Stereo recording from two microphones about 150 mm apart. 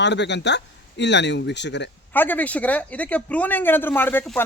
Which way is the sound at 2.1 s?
10° left (ahead or behind).